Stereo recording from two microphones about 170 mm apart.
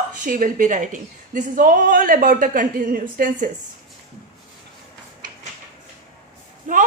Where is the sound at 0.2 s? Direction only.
50° right (ahead or behind).